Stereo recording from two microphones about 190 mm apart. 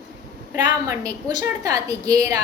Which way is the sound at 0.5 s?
15° right (ahead or behind).